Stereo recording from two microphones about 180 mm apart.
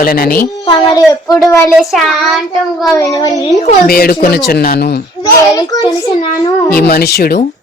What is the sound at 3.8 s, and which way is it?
Speech, 55° left (ahead or behind).